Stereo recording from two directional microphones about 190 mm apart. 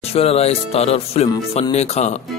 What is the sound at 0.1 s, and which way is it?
Speech, 30° left (ahead or behind).